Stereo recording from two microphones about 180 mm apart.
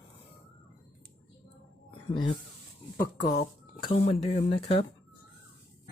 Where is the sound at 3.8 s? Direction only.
35° left (ahead or behind).